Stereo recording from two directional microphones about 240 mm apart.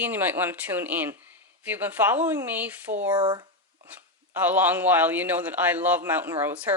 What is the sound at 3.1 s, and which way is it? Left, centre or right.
Speech, centre.